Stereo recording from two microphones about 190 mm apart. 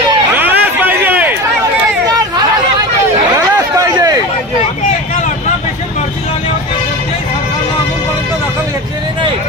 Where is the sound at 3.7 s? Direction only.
20° right (ahead or behind).